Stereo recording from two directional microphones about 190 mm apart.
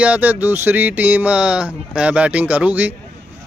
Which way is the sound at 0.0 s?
10° right (ahead or behind).